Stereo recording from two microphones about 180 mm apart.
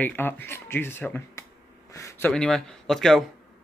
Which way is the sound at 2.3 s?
5° left (ahead or behind).